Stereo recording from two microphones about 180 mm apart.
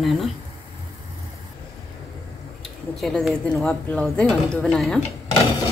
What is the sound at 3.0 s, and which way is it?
Speech, centre (ahead or behind).